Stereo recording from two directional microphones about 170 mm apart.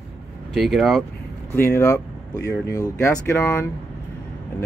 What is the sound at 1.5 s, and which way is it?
Speech, 15° left (ahead or behind).